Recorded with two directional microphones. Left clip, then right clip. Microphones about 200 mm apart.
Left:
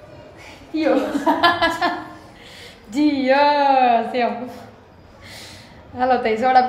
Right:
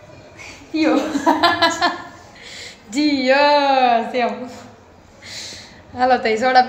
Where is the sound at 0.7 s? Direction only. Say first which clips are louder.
Right 2 dB; 45° right (ahead or behind).